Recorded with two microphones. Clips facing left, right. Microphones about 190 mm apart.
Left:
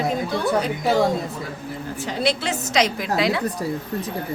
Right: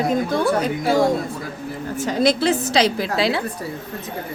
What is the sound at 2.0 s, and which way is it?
A woman's voice, 45° right (ahead or behind).